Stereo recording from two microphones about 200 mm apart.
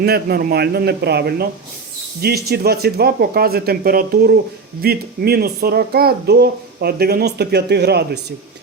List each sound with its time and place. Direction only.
0.0 s speech: 50° right (ahead or behind)